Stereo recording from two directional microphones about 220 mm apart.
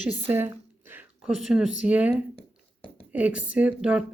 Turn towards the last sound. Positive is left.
turn(degrees=-5)  # may be behind; listen again after turning